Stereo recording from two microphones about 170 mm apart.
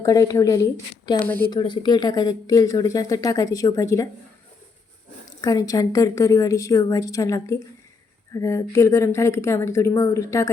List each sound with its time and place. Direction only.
0.0 s speech: 20° left (ahead or behind)
1.2 s a woman's voice: 10° left (ahead or behind)
1.5 s speech: 25° left (ahead or behind)
5.4 s a woman's voice: 20° left (ahead or behind)